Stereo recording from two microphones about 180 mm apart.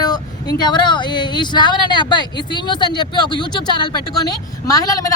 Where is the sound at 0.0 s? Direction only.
20° left (ahead or behind).